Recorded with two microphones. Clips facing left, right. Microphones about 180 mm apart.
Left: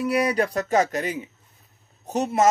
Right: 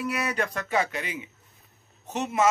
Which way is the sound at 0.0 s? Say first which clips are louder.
Left 7 dB; 40° left (ahead or behind).